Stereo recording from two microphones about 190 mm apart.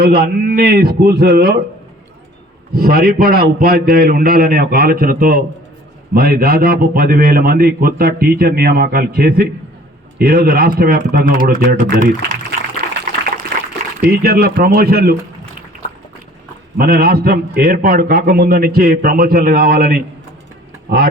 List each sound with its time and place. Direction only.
0.0 s a man's voice: 50° right (ahead or behind)
2.7 s a man's voice: 50° right (ahead or behind)
14.0 s a man's voice: 50° right (ahead or behind)
16.7 s a man's voice: 55° right (ahead or behind)